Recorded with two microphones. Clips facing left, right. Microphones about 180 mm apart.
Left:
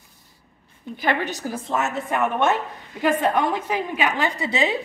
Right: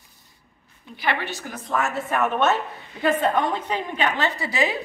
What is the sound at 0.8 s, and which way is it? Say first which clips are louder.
A woman's voice: left 3 dB; 45° left (ahead or behind).